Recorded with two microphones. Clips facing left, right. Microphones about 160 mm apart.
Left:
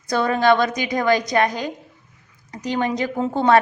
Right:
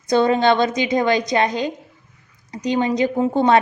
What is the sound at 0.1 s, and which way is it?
A woman's voice, 25° right (ahead or behind).